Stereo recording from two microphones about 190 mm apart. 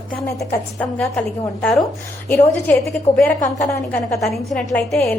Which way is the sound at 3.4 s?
40° left (ahead or behind).